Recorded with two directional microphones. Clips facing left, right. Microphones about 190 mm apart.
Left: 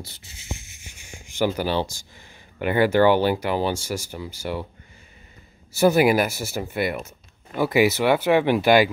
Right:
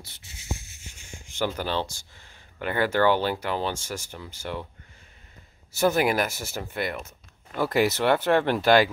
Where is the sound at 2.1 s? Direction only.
15° left (ahead or behind).